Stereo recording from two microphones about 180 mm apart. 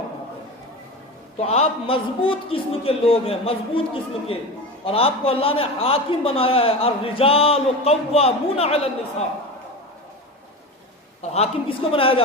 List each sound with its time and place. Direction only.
1.4 s a man's voice: 35° left (ahead or behind)
4.9 s a man's voice: 30° left (ahead or behind)
11.2 s a man's voice: 35° left (ahead or behind)